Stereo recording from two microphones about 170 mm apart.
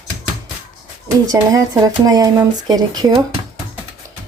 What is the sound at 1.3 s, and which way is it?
A woman's voice, 20° right (ahead or behind).